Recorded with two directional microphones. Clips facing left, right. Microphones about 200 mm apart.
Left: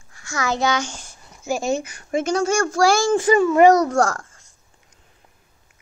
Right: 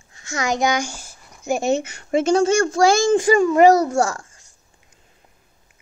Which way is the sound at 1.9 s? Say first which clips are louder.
Right 4 dB; 25° right (ahead or behind).